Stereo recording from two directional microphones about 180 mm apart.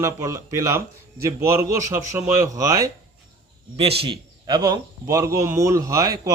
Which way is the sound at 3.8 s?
35° right (ahead or behind).